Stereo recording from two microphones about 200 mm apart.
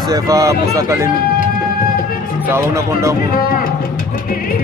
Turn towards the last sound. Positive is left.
turn(degrees=-15)  # may be behind; listen again after turning